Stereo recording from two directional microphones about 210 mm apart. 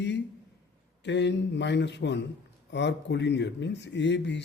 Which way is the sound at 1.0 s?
55° left (ahead or behind).